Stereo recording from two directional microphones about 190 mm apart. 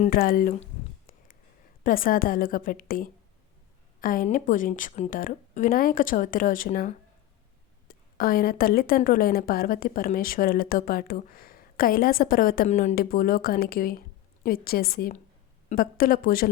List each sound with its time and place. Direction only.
0.0 s a woman's voice: 50° left (ahead or behind)
1.8 s a woman's voice: 45° left (ahead or behind)
13.0 s a woman's voice: 50° left (ahead or behind)